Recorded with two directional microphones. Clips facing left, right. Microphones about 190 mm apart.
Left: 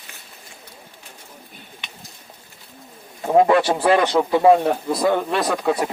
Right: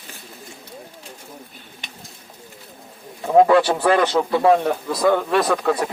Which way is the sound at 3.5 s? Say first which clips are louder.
Even; 20° left (ahead or behind).